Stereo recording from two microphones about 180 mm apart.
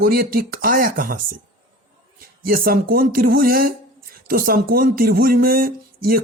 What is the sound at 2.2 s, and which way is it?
Speech, 55° right (ahead or behind).